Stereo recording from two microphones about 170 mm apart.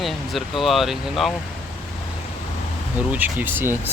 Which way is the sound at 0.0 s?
Centre (ahead or behind).